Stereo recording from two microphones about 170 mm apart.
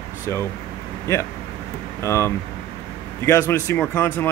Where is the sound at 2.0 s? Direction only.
15° left (ahead or behind).